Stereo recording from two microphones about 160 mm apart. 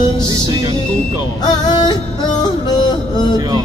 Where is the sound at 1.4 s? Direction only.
25° left (ahead or behind).